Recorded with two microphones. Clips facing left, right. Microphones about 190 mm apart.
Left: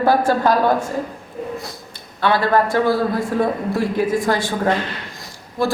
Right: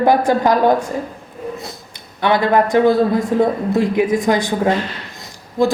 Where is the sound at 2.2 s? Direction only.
20° right (ahead or behind).